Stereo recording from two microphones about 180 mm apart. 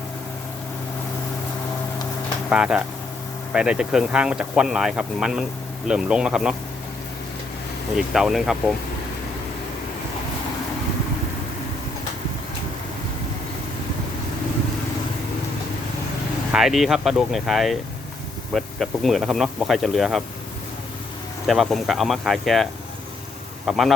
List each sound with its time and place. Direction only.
2.5 s speech: 5° right (ahead or behind)
7.9 s speech: centre (ahead or behind)
16.5 s speech: centre (ahead or behind)
21.4 s speech: centre (ahead or behind)